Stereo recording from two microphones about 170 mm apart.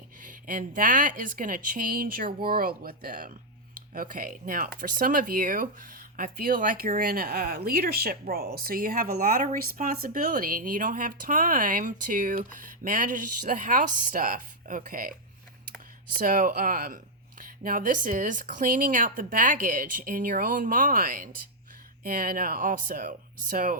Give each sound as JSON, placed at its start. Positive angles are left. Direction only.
{"t": 0.2, "sound": "speech", "side_deg": -55}
{"t": 16.1, "sound": "speech", "side_deg": -55}